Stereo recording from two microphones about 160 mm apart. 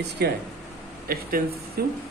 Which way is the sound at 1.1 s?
65° right (ahead or behind).